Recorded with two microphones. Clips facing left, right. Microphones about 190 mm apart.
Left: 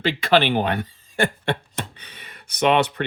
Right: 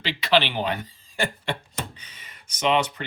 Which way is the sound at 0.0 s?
50° left (ahead or behind).